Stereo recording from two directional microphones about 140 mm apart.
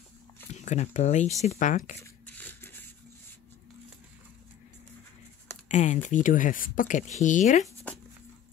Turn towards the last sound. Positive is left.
turn(degrees=65)  # may be behind; listen again after turning